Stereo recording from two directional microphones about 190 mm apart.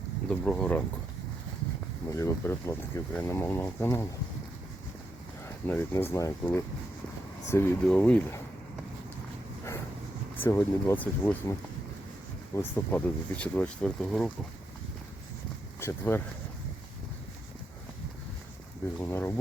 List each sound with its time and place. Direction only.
0.3 s speech: 5° left (ahead or behind)
2.0 s speech: 15° left (ahead or behind)
5.6 s speech: 10° left (ahead or behind)
10.4 s speech: 10° left (ahead or behind)
12.5 s speech: 10° left (ahead or behind)
15.8 s speech: 10° left (ahead or behind)
18.9 s speech: 10° left (ahead or behind)